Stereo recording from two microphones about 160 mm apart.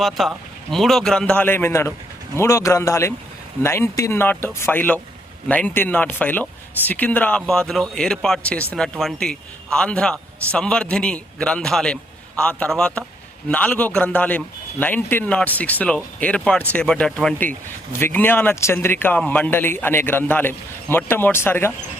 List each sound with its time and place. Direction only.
0.0 s a man's voice: centre (ahead or behind)